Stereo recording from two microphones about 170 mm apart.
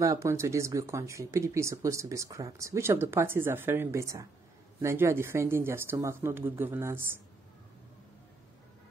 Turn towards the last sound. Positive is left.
turn(degrees=-15)  # may be behind; listen again after turning